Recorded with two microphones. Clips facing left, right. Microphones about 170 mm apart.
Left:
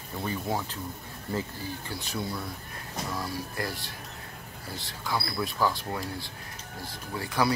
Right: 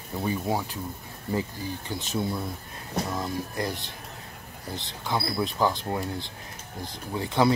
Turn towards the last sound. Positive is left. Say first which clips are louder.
# right 4 dB
turn(degrees=-20)  # may be behind; listen again after turning